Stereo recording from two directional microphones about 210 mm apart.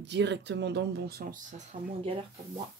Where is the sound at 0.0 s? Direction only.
55° right (ahead or behind).